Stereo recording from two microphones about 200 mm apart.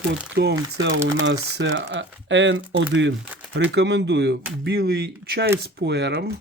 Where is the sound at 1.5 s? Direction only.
60° right (ahead or behind).